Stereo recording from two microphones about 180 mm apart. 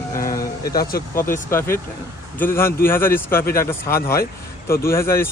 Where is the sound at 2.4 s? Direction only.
15° left (ahead or behind).